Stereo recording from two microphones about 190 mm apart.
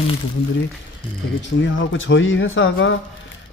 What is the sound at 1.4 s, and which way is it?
A man's voice, 75° left (ahead or behind).